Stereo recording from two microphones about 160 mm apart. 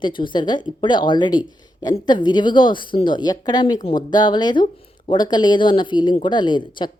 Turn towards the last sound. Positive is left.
turn(degrees=30)  # may be behind; listen again after turning